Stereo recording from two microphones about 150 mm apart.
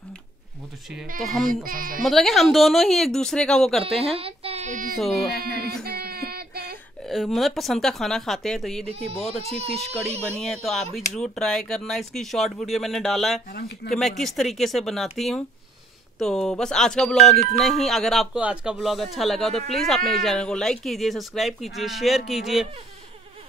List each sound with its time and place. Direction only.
1.4 s speech: 70° right (ahead or behind)
2.0 s speech: centre (ahead or behind)
4.2 s a sound: 45° right (ahead or behind)
4.9 s speech: centre (ahead or behind)
5.4 s speech: 90° right
5.9 s child singing: 90° right
7.1 s speech: centre (ahead or behind)
9.4 s speech: 40° right (ahead or behind)
10.2 s speech: 5° left (ahead or behind)